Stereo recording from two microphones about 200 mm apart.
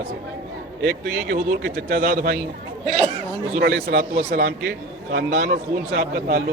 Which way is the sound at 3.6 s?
55° right (ahead or behind).